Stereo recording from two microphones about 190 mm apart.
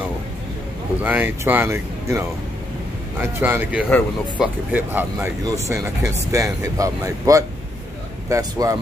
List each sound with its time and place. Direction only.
1.0 s speech: 10° right (ahead or behind)